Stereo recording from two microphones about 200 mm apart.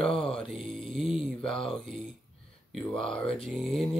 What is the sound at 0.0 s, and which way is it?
Mantra, 5° left (ahead or behind).